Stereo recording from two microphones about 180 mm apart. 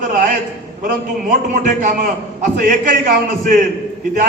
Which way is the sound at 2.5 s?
50° right (ahead or behind).